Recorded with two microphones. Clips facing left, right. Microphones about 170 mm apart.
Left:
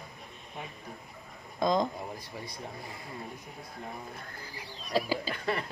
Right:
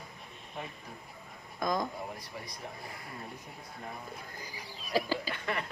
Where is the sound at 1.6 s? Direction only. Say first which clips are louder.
Left 5 dB; 25° left (ahead or behind).